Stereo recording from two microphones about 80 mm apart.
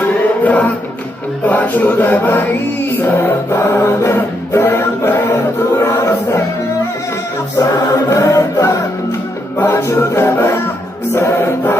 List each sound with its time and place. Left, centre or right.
0.4 s music: centre
1.5 s chant: left
8.1 s music: left
9.7 s music: left